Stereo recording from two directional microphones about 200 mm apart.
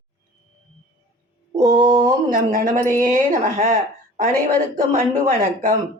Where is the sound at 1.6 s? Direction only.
20° right (ahead or behind).